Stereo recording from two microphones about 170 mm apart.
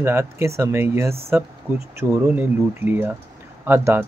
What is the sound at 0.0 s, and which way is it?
Speech, 15° right (ahead or behind).